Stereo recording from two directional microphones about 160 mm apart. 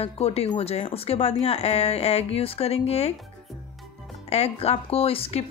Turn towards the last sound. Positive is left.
turn(degrees=35)  # may be behind; listen again after turning